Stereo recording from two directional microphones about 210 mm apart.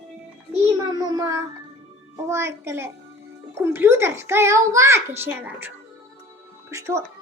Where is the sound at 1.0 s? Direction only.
20° right (ahead or behind).